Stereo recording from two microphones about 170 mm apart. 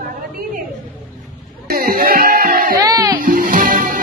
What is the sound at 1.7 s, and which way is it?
Music, 60° right (ahead or behind).